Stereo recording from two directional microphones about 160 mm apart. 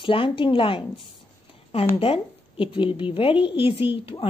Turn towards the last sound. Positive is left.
turn(degrees=35)  # may be behind; listen again after turning